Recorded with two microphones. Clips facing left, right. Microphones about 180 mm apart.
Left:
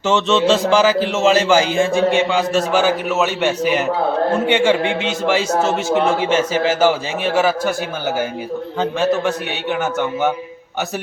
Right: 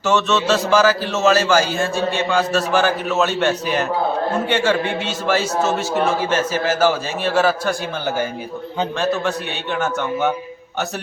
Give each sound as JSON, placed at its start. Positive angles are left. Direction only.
{"t": 0.0, "sound": "a man's voice", "side_deg": 20}
{"t": 9.7, "sound": "a man's voice", "side_deg": 10}